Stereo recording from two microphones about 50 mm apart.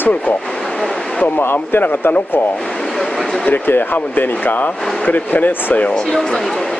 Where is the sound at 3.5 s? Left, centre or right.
Left.